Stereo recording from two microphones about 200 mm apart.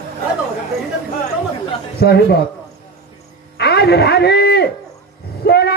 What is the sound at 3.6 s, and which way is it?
A man's voice, 55° left (ahead or behind).